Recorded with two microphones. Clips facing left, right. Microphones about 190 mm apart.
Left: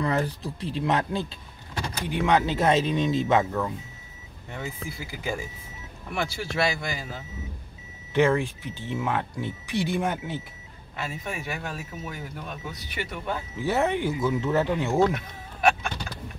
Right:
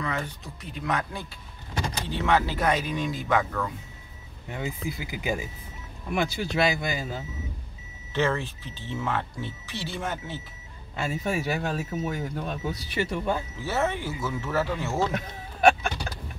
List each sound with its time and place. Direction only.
0.0 s speech: 35° left (ahead or behind)
4.5 s speech: 15° right (ahead or behind)
8.1 s speech: 15° left (ahead or behind)
11.0 s speech: 30° right (ahead or behind)
13.6 s speech: 15° left (ahead or behind)